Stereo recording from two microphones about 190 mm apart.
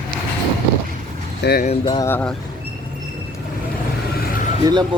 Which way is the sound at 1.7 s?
25° left (ahead or behind).